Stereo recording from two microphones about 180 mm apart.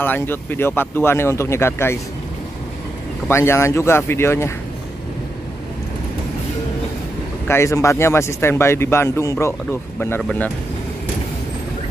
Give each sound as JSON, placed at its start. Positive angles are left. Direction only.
{"t": 0.0, "sound": "speech", "side_deg": 10}
{"t": 3.3, "sound": "speech", "side_deg": 15}
{"t": 7.4, "sound": "speech", "side_deg": 15}